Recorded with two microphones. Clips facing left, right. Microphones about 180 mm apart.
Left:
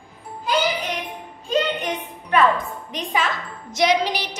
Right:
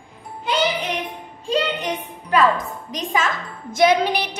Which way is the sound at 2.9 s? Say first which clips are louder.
Right 1 dB; 45° right (ahead or behind).